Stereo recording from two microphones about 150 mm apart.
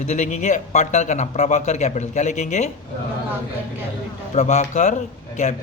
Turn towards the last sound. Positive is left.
turn(degrees=50)  # may be behind; listen again after turning